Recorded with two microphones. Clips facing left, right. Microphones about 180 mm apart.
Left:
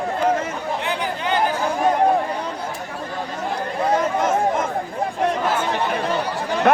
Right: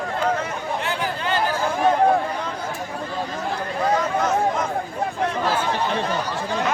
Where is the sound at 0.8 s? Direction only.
15° left (ahead or behind).